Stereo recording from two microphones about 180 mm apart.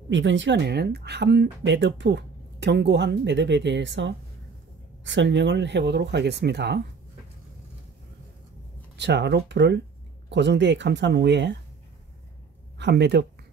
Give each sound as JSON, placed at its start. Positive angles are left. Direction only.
{"t": 0.1, "sound": "speech", "side_deg": -90}
{"t": 8.9, "sound": "speech", "side_deg": -70}
{"t": 12.7, "sound": "speech", "side_deg": -70}